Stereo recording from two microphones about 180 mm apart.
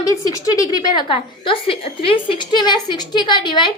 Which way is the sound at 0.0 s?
20° left (ahead or behind).